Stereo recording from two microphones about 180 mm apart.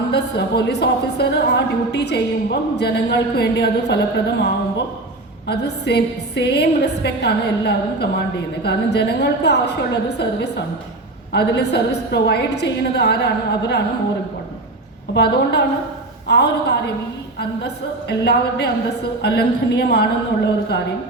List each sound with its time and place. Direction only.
0.1 s a woman's voice: 70° left (ahead or behind)
5.5 s a woman's voice: 65° left (ahead or behind)
15.1 s a woman's voice: 70° left (ahead or behind)
18.1 s speech: 65° left (ahead or behind)